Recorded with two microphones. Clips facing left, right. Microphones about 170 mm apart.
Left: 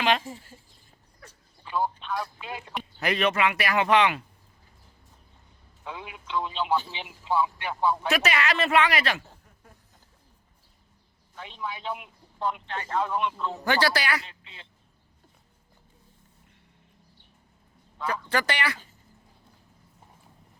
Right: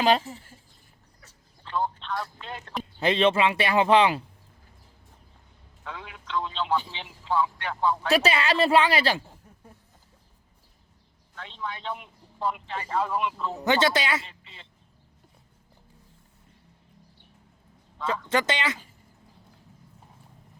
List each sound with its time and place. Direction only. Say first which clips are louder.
0.3 s a man's voice: left 1 dB; 10° left (ahead or behind)
3.0 s speech: right 3 dB; 25° right (ahead or behind)
5.8 s speech: left 1 dB; 15° left (ahead or behind)
8.1 s a woman's voice: right 3 dB; 30° right (ahead or behind)
11.3 s a man's voice: even; 10° left (ahead or behind)
13.7 s speech: right 2 dB; 20° right (ahead or behind)
14.2 s a man's voice: right 1 dB; centre (ahead or behind)
18.3 s speech: right 2 dB; 20° right (ahead or behind)